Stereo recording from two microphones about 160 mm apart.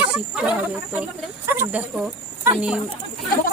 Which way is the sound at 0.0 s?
5° right (ahead or behind).